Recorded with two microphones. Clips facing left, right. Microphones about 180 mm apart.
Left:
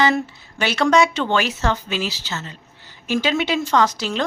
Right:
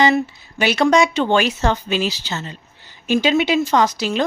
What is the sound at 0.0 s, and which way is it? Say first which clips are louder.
Speech: right 3 dB; 10° right (ahead or behind).